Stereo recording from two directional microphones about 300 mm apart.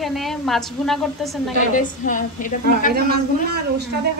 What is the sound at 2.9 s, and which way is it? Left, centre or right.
Speech, right.